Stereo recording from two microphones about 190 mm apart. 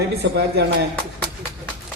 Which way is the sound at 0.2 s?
60° right (ahead or behind).